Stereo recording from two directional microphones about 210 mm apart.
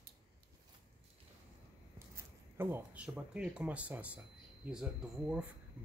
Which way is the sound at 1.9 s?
10° right (ahead or behind).